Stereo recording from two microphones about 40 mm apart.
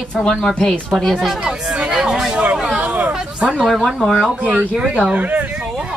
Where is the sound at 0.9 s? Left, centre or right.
Centre.